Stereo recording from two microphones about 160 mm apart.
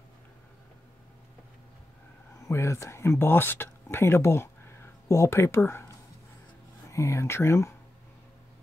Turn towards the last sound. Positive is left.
turn(degrees=15)  # may be behind; listen again after turning